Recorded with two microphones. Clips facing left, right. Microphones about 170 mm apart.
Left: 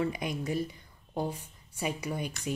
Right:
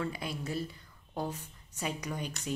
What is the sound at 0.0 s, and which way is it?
A woman's voice, 15° left (ahead or behind).